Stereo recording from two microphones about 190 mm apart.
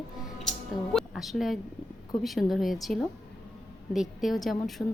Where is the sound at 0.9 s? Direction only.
Centre (ahead or behind).